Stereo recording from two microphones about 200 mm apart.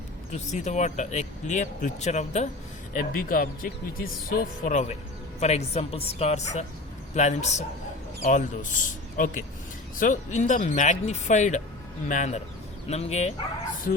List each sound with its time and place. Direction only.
0.3 s speech: 35° left (ahead or behind)